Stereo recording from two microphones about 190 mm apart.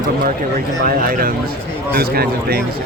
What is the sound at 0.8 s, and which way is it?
Speech, 50° right (ahead or behind).